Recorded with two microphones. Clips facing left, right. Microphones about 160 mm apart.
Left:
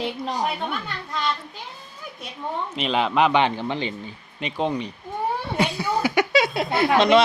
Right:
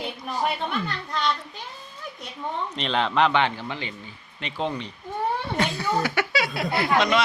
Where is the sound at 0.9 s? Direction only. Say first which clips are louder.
Right 1 dB; 5° left (ahead or behind).